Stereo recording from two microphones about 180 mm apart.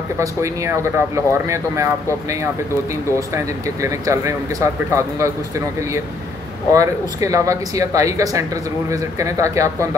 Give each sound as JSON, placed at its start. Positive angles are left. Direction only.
{"t": 0.2, "sound": "speech", "side_deg": -15}
{"t": 3.8, "sound": "speech", "side_deg": -15}
{"t": 6.7, "sound": "speech", "side_deg": -20}